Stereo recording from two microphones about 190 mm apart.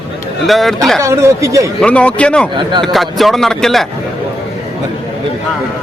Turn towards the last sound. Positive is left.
turn(degrees=0)  # may be behind; listen again after turning